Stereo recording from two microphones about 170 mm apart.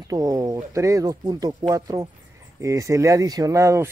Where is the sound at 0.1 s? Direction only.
20° right (ahead or behind).